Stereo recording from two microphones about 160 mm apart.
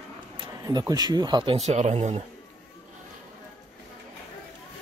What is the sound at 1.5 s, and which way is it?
Speech, 45° right (ahead or behind).